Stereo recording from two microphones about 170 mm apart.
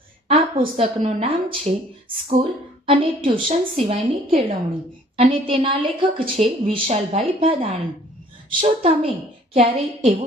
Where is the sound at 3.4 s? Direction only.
35° right (ahead or behind).